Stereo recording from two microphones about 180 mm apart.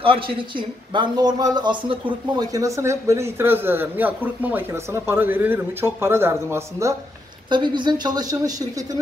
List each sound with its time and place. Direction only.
0.0 s speech: 30° right (ahead or behind)
7.4 s speech: 25° right (ahead or behind)